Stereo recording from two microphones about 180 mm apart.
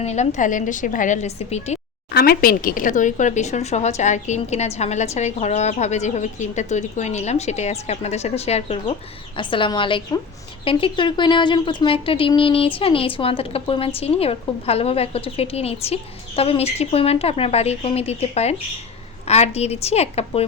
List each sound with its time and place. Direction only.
0.0 s a woman's voice: 40° left (ahead or behind)
2.1 s a woman's voice: 60° left (ahead or behind); by 20.4 s 35° left (ahead or behind)